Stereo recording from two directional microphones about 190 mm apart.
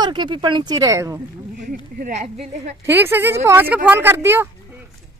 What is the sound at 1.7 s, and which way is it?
Speech, 50° right (ahead or behind).